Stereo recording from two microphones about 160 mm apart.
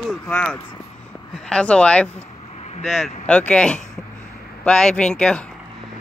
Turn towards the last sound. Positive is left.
turn(degrees=5)  # may be behind; listen again after turning